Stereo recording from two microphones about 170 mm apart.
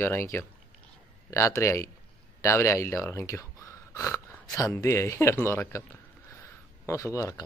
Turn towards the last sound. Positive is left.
turn(degrees=20)  # may be behind; listen again after turning